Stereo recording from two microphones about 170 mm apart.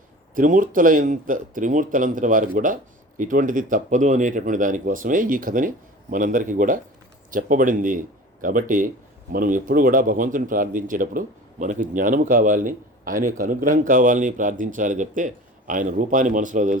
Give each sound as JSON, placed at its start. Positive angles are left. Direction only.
{"t": 0.3, "sound": "speech", "side_deg": -50}